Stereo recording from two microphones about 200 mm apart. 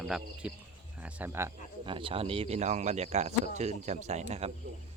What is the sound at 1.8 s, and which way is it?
Speech, 25° right (ahead or behind).